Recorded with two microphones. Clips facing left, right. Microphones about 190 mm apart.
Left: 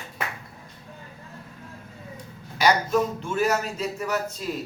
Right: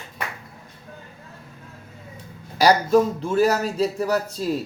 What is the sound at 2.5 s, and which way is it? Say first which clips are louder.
A man's voice: right 5 dB; 35° right (ahead or behind).